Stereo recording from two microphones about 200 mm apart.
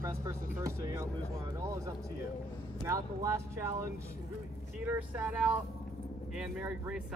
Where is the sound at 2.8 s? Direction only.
15° right (ahead or behind).